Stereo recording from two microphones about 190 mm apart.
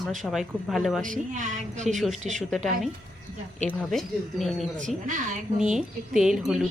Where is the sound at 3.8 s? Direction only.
Centre (ahead or behind).